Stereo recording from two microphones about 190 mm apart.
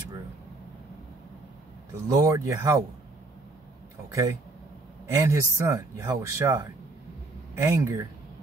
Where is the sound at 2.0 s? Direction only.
15° right (ahead or behind).